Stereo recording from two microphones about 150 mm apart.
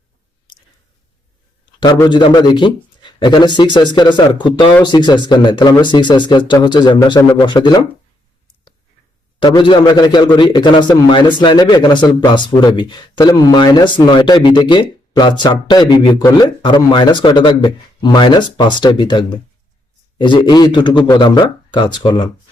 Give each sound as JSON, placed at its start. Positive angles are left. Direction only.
{"t": 2.0, "sound": "speech", "side_deg": 30}
{"t": 9.4, "sound": "speech", "side_deg": 30}